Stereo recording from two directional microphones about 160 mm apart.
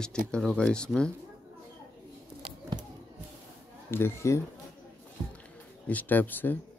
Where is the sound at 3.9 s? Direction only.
15° left (ahead or behind).